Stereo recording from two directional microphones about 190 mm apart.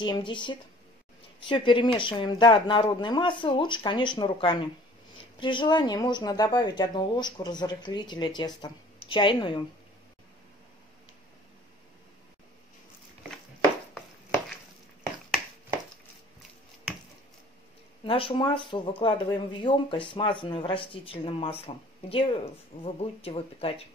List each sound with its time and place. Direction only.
0.0 s speech: 25° left (ahead or behind)
18.0 s speech: 30° left (ahead or behind)
22.7 s speech: 45° left (ahead or behind)
23.2 s speech: 30° left (ahead or behind)